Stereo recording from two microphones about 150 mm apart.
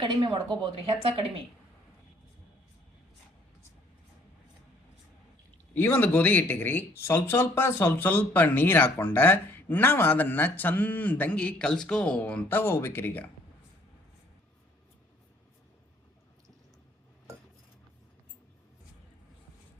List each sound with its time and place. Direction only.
0.0 s a woman's voice: 30° right (ahead or behind)
5.8 s speech: 10° left (ahead or behind)